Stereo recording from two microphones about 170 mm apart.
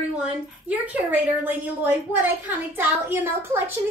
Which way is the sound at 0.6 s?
10° right (ahead or behind).